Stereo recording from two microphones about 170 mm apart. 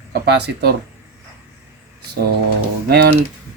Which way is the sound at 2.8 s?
65° right (ahead or behind).